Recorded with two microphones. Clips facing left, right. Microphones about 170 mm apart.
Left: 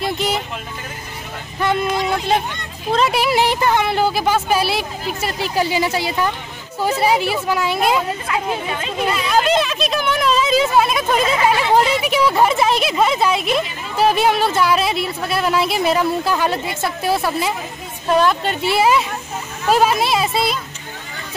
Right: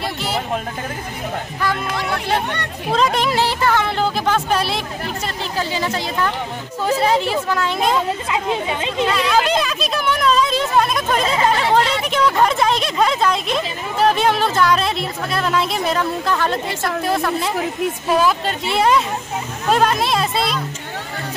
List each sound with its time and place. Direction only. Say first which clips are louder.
2.0 s speech: left 3 dB; 65° right (ahead or behind)
2.9 s a woman's voice: left 1 dB; 5° left (ahead or behind)
8.3 s a woman's voice: right 1 dB; 20° right (ahead or behind)
9.0 s speech: even; 5° left (ahead or behind)